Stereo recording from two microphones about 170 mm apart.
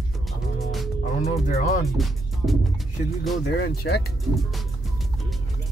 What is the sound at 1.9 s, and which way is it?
Music, centre (ahead or behind).